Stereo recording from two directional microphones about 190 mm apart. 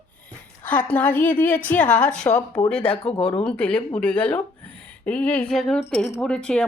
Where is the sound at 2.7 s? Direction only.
30° left (ahead or behind).